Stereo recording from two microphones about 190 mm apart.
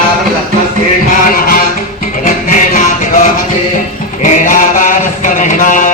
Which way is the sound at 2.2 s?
45° left (ahead or behind).